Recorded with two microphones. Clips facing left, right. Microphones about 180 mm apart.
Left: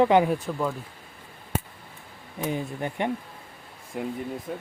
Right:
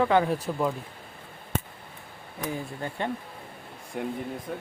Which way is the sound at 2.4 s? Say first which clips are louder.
Left 4 dB; 20° left (ahead or behind).